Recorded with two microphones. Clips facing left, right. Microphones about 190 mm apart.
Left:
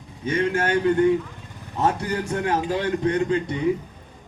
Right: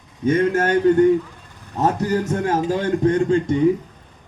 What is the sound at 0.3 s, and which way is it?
A man's voice, 45° right (ahead or behind).